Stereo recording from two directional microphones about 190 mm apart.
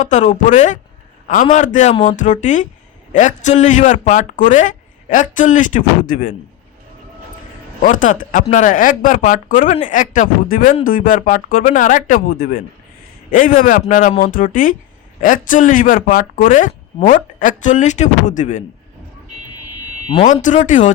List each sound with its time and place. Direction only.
0.0 s speech: 40° left (ahead or behind)
7.8 s speech: 45° left (ahead or behind)
20.2 s speech: 40° left (ahead or behind)